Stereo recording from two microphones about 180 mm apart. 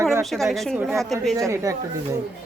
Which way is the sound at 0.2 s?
Centre (ahead or behind).